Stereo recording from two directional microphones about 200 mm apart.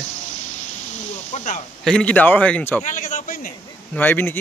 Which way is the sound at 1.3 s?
40° left (ahead or behind).